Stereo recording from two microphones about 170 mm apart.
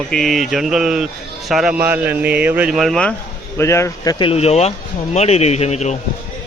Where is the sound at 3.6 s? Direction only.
15° left (ahead or behind).